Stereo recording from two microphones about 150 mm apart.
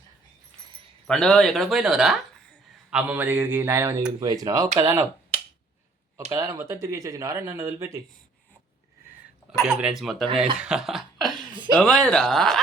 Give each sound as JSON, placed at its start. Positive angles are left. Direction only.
{"t": 1.0, "sound": "speech", "side_deg": 5}
{"t": 5.3, "sound": "finger snapping", "side_deg": -45}
{"t": 6.3, "sound": "speech", "side_deg": -20}
{"t": 9.5, "sound": "speech", "side_deg": -5}
{"t": 10.6, "sound": "cough", "side_deg": -5}
{"t": 11.5, "sound": "a sound", "side_deg": -30}
{"t": 11.8, "sound": "speech", "side_deg": 5}